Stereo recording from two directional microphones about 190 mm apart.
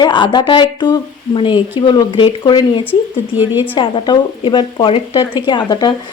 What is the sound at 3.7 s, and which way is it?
Speech, 25° left (ahead or behind).